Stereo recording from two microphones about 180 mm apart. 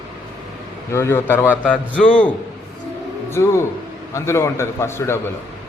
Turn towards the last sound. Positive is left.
turn(degrees=15)  # may be behind; listen again after turning